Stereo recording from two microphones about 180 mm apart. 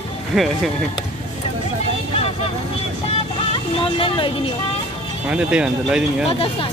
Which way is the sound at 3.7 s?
30° left (ahead or behind).